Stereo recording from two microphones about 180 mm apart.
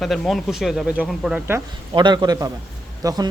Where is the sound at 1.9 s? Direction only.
25° right (ahead or behind).